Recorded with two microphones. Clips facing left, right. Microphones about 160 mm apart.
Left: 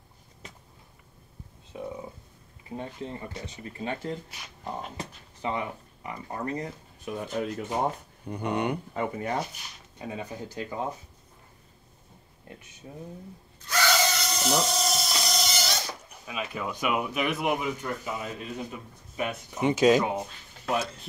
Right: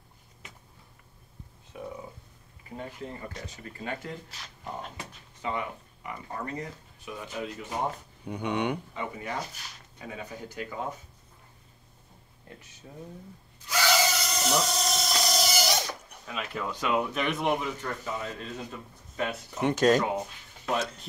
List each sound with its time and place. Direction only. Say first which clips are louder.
1.7 s a sound: left 3 dB; 20° left (ahead or behind)
2.7 s speech: left 3 dB; 25° left (ahead or behind)
8.3 s speech: left 1 dB; 5° left (ahead or behind)
8.9 s speech: left 5 dB; 45° left (ahead or behind)
9.9 s speech: left 4 dB; 25° left (ahead or behind)
12.8 s speech: left 3 dB; 25° left (ahead or behind)
13.7 s a sound: even; 10° right (ahead or behind)
16.1 s a man's voice: left 1 dB; 10° left (ahead or behind)